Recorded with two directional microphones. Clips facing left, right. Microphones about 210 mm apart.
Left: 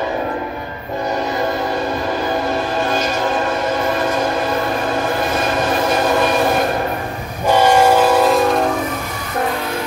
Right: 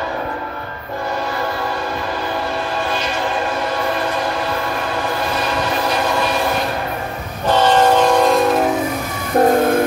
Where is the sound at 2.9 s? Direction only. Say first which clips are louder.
Left 3 dB; 45° left (ahead or behind).